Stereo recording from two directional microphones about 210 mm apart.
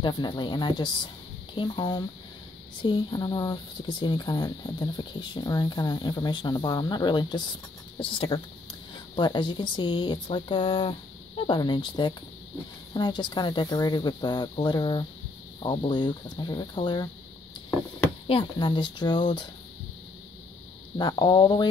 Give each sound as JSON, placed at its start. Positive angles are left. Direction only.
{"t": 0.0, "sound": "speech", "side_deg": 20}
{"t": 18.2, "sound": "speech", "side_deg": 25}
{"t": 21.0, "sound": "speech", "side_deg": 20}